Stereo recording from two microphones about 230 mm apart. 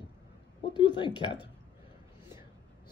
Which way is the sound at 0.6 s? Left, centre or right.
Centre.